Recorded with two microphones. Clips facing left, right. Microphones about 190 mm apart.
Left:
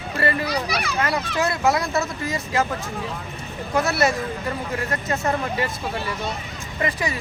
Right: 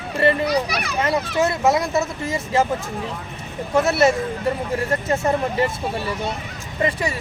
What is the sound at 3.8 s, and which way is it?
Speech, 25° right (ahead or behind).